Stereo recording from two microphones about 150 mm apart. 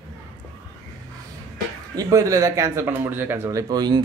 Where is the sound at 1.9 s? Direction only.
20° right (ahead or behind).